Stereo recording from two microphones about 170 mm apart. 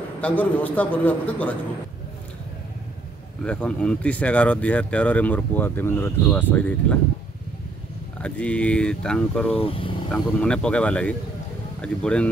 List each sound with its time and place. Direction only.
0.2 s speech: 10° left (ahead or behind)
3.4 s speech: 5° left (ahead or behind)
8.2 s speech: 5° left (ahead or behind)
9.6 s speech: 30° left (ahead or behind)
10.1 s speech: 5° left (ahead or behind)